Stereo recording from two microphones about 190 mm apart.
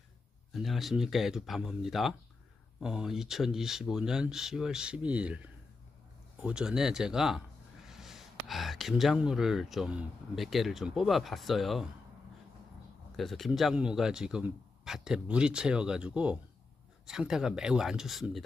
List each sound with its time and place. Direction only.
0.5 s speech: centre (ahead or behind)
13.1 s speech: centre (ahead or behind)